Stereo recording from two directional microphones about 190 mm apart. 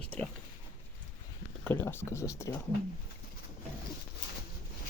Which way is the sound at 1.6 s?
10° left (ahead or behind).